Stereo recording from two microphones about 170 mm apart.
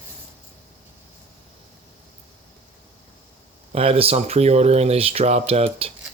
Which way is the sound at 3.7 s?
35° right (ahead or behind).